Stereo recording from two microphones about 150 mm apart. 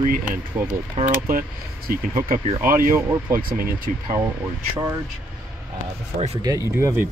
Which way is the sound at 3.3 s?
75° right (ahead or behind).